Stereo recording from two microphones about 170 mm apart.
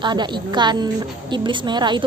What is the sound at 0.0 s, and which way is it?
Speech, 25° right (ahead or behind).